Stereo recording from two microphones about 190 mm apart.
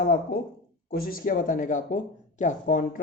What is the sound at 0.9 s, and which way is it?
Speech, 50° left (ahead or behind).